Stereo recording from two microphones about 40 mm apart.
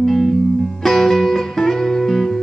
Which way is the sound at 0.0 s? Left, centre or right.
Centre.